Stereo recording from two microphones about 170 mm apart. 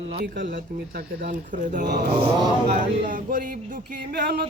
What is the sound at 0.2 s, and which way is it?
Speech, 75° right (ahead or behind).